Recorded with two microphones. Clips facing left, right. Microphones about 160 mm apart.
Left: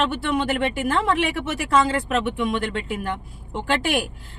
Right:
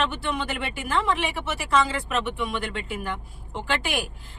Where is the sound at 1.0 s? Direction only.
55° left (ahead or behind).